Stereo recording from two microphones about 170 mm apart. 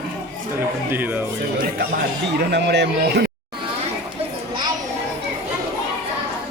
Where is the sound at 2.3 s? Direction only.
80° right.